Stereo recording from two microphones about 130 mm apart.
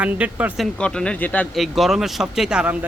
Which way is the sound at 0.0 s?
10° right (ahead or behind).